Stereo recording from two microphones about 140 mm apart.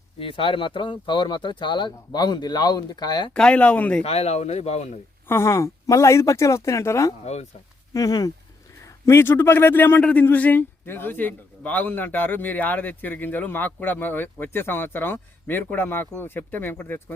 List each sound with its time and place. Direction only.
0.2 s speech: 40° left (ahead or behind)
3.3 s a man's voice: 5° left (ahead or behind)
4.0 s a man's voice: 50° left (ahead or behind)
5.3 s a man's voice: 20° left (ahead or behind)